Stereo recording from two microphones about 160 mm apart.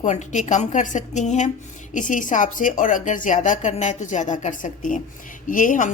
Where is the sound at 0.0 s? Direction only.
50° left (ahead or behind).